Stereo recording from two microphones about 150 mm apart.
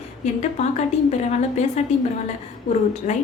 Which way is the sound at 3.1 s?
50° left (ahead or behind).